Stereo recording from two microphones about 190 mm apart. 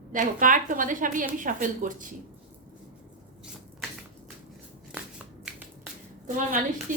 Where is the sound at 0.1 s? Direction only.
45° right (ahead or behind).